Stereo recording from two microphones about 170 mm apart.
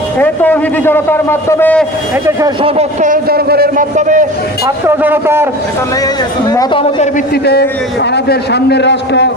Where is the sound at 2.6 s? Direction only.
40° right (ahead or behind).